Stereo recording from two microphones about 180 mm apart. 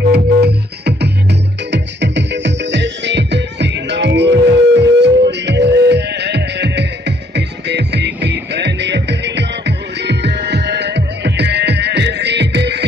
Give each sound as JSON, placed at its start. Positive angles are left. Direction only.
{"t": 0.1, "sound": "music", "side_deg": -65}